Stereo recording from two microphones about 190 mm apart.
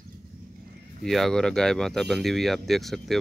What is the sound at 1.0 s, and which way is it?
Speech, centre (ahead or behind).